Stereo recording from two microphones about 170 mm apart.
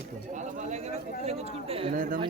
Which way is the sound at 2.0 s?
50° right (ahead or behind).